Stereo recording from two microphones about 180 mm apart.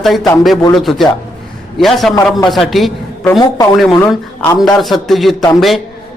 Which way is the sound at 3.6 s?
20° left (ahead or behind).